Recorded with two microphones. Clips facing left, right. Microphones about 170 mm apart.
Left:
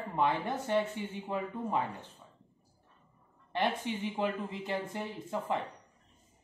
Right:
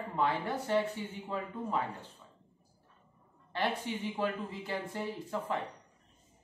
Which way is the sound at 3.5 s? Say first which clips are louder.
Left 2 dB; 20° left (ahead or behind).